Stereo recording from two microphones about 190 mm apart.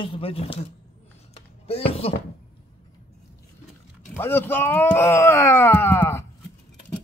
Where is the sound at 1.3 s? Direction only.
30° left (ahead or behind).